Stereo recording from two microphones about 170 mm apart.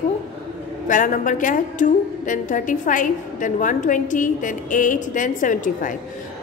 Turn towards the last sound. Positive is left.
turn(degrees=50)  # may be behind; listen again after turning